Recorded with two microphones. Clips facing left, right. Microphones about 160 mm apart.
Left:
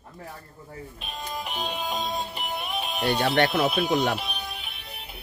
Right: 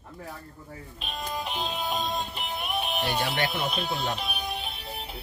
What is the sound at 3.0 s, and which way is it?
Speech, 65° left (ahead or behind).